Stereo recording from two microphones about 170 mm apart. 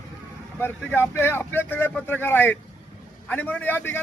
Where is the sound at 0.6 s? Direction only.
10° left (ahead or behind).